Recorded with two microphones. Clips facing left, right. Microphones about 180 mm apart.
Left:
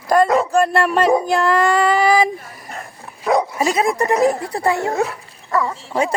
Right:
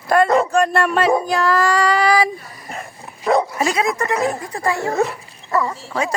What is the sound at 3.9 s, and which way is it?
Speech, 35° left (ahead or behind).